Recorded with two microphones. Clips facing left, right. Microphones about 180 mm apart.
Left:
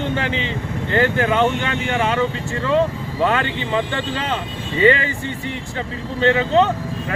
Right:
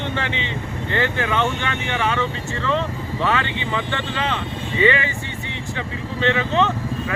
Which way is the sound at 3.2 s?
35° left (ahead or behind).